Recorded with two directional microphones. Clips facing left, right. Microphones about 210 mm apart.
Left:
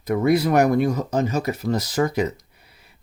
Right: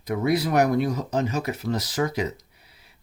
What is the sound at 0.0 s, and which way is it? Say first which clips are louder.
Speech: left 4 dB; 50° left (ahead or behind).